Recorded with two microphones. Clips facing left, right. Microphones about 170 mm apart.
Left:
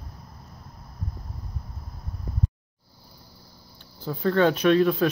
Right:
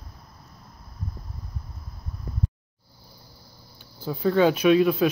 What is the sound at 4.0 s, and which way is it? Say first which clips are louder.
Speech: right 1 dB; 5° right (ahead or behind).